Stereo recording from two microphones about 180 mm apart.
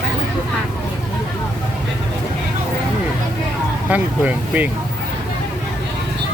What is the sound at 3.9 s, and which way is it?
Speech, 10° right (ahead or behind).